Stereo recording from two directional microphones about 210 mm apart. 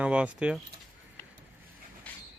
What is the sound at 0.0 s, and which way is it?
Speech, 5° right (ahead or behind).